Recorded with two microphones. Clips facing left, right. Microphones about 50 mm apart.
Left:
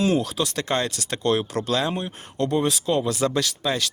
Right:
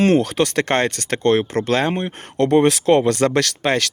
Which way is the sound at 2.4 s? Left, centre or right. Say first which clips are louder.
Right 8 dB; right.